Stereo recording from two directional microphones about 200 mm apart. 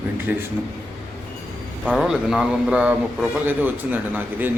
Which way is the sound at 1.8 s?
Centre (ahead or behind).